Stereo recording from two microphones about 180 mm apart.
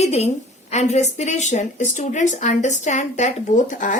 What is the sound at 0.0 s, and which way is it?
A woman's voice, 35° left (ahead or behind).